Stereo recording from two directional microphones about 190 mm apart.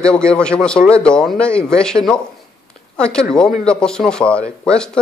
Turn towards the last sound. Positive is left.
turn(degrees=5)  # may be behind; listen again after turning